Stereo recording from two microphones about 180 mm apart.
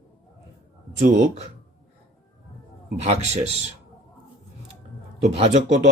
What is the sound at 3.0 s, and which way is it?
Speech, 40° right (ahead or behind).